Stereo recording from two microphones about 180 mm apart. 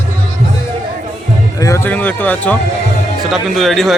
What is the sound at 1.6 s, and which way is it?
A man's voice, 15° left (ahead or behind).